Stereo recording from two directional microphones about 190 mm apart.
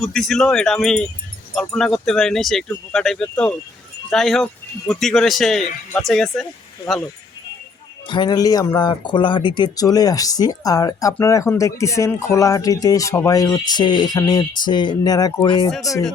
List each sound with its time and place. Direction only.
0.0 s speech: centre (ahead or behind)
8.0 s speech: 25° left (ahead or behind)